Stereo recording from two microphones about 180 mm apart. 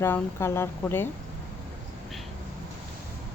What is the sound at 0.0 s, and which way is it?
Speech, 15° left (ahead or behind).